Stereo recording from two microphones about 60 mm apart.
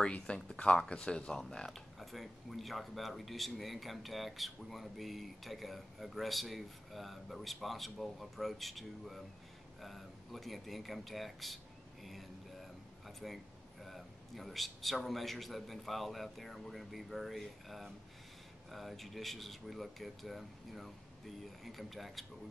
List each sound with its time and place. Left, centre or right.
0.0 s speech: centre
1.7 s speech: centre
13.0 s a sound: centre
13.8 s speech: centre